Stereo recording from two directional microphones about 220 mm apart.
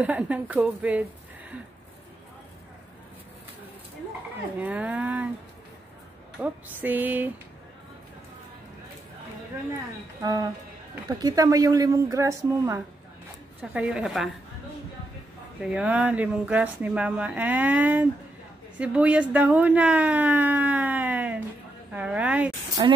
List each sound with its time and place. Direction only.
0.0 s speech: 5° right (ahead or behind)
4.6 s speech: 5° right (ahead or behind)
6.4 s speech: 10° right (ahead or behind)
10.2 s speech: 15° right (ahead or behind); by 14.3 s centre (ahead or behind)
15.6 s speech: 5° right (ahead or behind)
22.8 s speech: 20° right (ahead or behind)